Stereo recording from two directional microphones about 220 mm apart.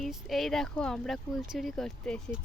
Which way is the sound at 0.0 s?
Centre (ahead or behind).